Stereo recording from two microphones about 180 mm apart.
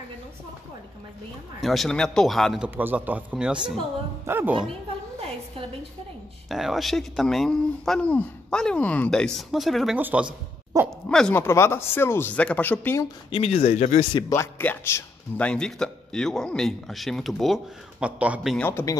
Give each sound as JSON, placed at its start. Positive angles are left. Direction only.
{"t": 1.6, "sound": "a woman's voice", "side_deg": 0}
{"t": 6.5, "sound": "speech", "side_deg": 0}
{"t": 10.9, "sound": "speech", "side_deg": 5}
{"t": 13.3, "sound": "speech", "side_deg": 35}
{"t": 14.3, "sound": "speech", "side_deg": 10}
{"t": 18.6, "sound": "speech", "side_deg": 15}